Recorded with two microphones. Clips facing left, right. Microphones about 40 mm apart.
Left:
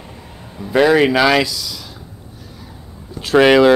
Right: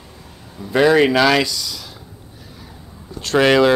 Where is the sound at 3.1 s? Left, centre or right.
Centre.